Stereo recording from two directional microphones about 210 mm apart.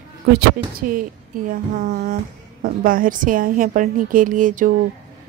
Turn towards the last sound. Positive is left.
turn(degrees=-40)  # may be behind; listen again after turning